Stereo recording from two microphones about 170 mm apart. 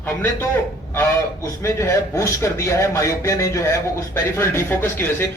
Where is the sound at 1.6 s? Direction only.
15° left (ahead or behind).